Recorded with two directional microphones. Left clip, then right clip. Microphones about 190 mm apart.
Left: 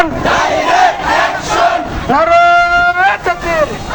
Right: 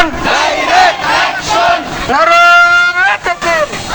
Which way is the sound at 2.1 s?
10° left (ahead or behind).